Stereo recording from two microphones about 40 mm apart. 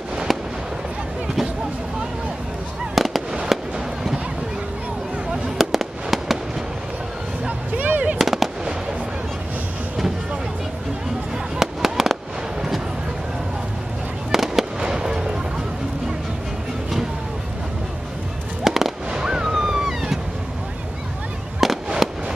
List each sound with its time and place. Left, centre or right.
2.9 s fireworks: centre
5.6 s fireworks: centre
7.4 s music: right
8.2 s fireworks: centre
11.6 s fireworks: centre
14.3 s fireworks: centre
14.8 s fireworks: centre
18.6 s fireworks: centre
19.0 s fireworks: right
19.5 s a sound: centre
21.6 s fireworks: centre
22.0 s a sound: centre